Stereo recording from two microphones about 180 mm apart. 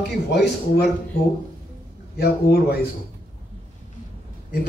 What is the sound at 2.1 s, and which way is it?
Speech, 60° left (ahead or behind).